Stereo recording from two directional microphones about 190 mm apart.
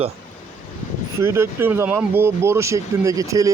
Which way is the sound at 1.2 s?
15° right (ahead or behind).